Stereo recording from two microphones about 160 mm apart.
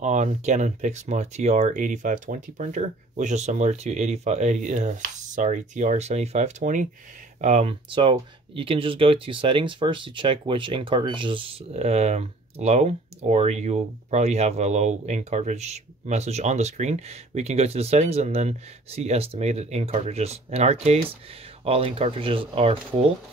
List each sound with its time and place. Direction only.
0.0 s speech: 50° right (ahead or behind)
7.4 s speech: 40° right (ahead or behind)